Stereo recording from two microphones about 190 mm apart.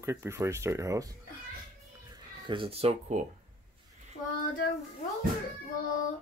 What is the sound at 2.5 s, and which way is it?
Speech, 30° right (ahead or behind).